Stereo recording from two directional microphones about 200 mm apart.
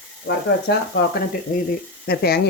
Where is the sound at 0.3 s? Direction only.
55° left (ahead or behind).